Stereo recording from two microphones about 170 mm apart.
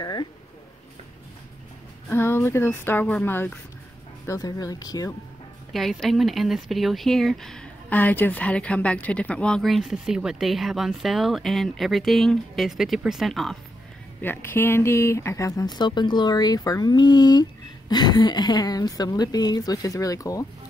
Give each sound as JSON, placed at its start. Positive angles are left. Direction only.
{"t": 0.0, "sound": "a sound", "side_deg": 25}
{"t": 2.0, "sound": "speech", "side_deg": 15}
{"t": 5.7, "sound": "speech", "side_deg": 0}
{"t": 14.2, "sound": "speech", "side_deg": 15}